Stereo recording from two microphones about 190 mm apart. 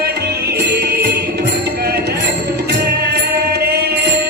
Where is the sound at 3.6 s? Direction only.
55° right (ahead or behind).